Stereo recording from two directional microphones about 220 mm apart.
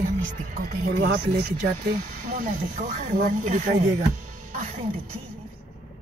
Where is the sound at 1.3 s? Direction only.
45° right (ahead or behind).